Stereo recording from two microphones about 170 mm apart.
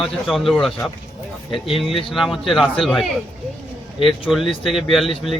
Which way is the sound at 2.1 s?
Centre (ahead or behind).